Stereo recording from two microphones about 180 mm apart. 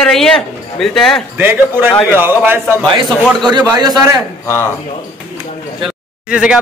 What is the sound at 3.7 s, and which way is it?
Speech, 20° right (ahead or behind).